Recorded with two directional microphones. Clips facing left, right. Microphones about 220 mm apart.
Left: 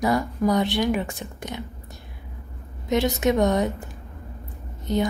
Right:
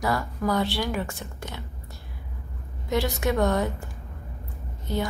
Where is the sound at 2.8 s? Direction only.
20° left (ahead or behind).